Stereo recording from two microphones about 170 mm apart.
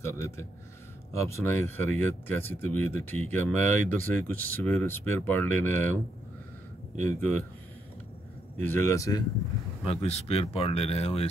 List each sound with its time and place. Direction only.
0.0 s speech: 15° left (ahead or behind)
7.0 s speech: 10° left (ahead or behind)
8.6 s speech: 15° left (ahead or behind)
9.8 s speech: 35° left (ahead or behind)